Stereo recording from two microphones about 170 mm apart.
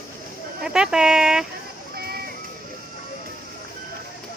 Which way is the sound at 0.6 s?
5° right (ahead or behind).